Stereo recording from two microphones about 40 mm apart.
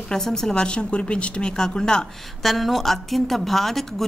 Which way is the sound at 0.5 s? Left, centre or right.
Left.